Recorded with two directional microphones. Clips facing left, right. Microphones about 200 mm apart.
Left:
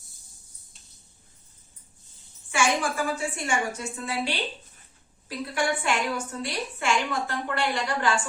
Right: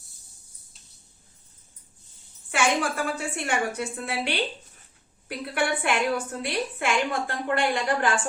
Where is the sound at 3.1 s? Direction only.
60° right (ahead or behind).